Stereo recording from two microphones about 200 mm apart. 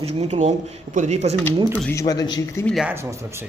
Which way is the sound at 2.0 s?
20° left (ahead or behind).